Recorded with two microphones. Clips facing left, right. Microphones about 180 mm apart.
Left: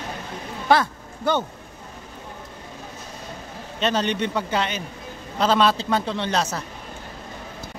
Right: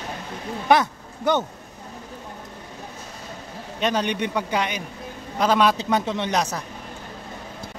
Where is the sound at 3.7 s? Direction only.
10° right (ahead or behind).